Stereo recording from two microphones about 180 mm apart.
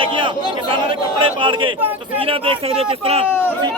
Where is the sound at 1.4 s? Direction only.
30° right (ahead or behind).